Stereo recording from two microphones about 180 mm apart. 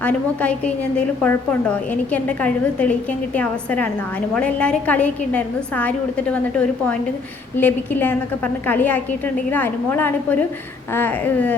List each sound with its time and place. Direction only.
0.0 s a woman's voice: 5° left (ahead or behind)